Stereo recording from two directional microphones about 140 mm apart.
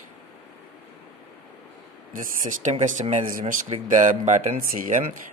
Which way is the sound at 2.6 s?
60° right (ahead or behind).